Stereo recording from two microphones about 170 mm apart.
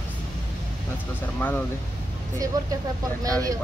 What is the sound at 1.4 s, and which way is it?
Speech, 10° left (ahead or behind).